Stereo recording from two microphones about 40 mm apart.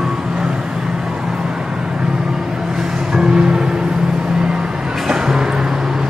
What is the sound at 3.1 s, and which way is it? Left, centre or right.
Music, centre.